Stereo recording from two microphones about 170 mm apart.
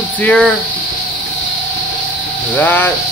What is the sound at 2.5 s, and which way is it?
Speech, 10° left (ahead or behind).